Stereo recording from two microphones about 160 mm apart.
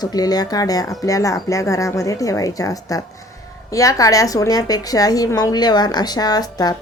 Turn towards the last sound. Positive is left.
turn(degrees=25)  # may be behind; listen again after turning